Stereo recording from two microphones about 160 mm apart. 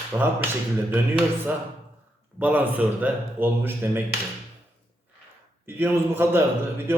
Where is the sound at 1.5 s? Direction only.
15° right (ahead or behind).